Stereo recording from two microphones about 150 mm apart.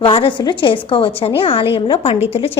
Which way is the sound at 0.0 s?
35° left (ahead or behind).